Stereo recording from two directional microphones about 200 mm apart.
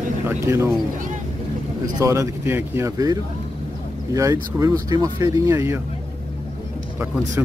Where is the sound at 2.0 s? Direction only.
15° right (ahead or behind).